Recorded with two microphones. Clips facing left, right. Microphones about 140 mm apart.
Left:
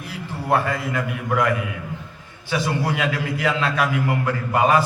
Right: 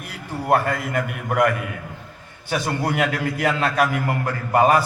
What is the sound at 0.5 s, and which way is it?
A man's voice, 50° right (ahead or behind).